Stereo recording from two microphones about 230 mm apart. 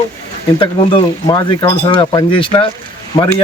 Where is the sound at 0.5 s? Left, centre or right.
Left.